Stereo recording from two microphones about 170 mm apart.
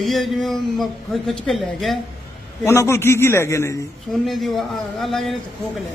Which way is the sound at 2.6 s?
15° left (ahead or behind).